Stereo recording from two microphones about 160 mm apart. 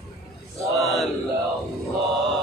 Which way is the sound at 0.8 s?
Centre (ahead or behind).